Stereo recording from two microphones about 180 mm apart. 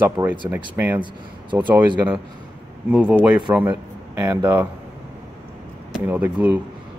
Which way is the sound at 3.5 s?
10° right (ahead or behind).